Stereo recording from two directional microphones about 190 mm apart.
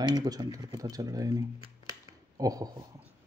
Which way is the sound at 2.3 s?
20° right (ahead or behind).